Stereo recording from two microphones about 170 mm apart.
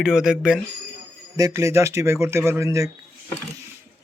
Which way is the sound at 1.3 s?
20° right (ahead or behind).